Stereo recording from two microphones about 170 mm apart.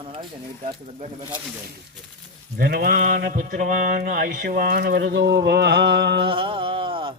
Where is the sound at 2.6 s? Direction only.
60° right (ahead or behind); by 6.2 s 75° right (ahead or behind).